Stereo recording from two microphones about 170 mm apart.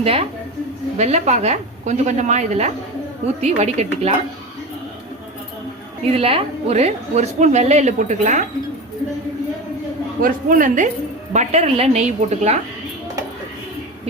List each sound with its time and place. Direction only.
0.0 s a woman's voice: 35° right (ahead or behind)
6.1 s a woman's voice: 35° right (ahead or behind)
10.2 s a woman's voice: 55° right (ahead or behind)
11.3 s a woman's voice: 40° right (ahead or behind)